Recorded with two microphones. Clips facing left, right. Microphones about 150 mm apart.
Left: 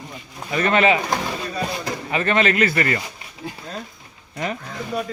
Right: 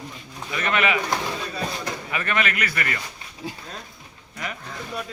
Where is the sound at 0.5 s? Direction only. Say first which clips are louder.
Left 6 dB; 35° left (ahead or behind).